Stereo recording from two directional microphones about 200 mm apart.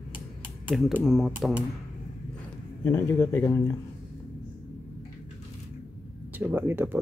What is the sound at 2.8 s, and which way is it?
Speech, 10° left (ahead or behind).